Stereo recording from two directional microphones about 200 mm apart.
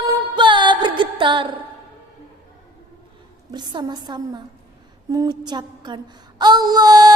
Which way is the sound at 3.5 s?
20° right (ahead or behind).